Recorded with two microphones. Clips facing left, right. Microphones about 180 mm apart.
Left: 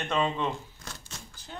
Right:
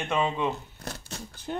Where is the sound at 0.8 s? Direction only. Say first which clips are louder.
Right 7 dB; 65° right (ahead or behind).